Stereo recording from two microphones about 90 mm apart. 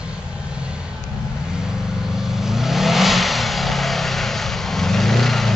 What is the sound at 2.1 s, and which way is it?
Vehicle, 5° right (ahead or behind).